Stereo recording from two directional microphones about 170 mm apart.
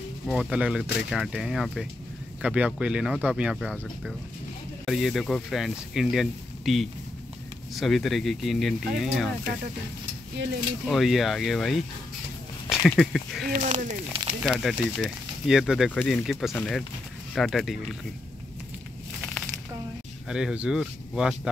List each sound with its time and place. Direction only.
0.3 s speech: 5° right (ahead or behind)
4.8 s speech: centre (ahead or behind)
10.9 s speech: centre (ahead or behind)
13.7 s speech: 45° right (ahead or behind)
14.4 s speech: centre (ahead or behind)
20.2 s speech: 5° right (ahead or behind)